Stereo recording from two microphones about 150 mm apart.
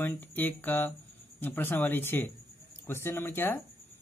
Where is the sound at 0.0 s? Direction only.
10° left (ahead or behind).